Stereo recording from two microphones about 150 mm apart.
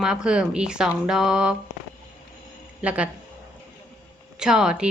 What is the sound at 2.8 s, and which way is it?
Speech, 10° right (ahead or behind).